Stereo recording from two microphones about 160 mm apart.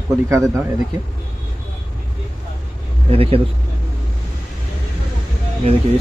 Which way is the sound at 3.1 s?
35° right (ahead or behind).